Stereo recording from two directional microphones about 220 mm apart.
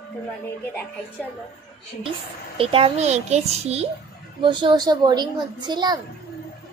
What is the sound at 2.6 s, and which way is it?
A child's voice, 25° right (ahead or behind).